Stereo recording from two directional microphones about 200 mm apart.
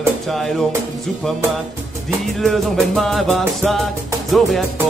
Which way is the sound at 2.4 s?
Centre (ahead or behind).